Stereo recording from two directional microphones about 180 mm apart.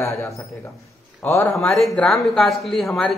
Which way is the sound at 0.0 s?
15° left (ahead or behind).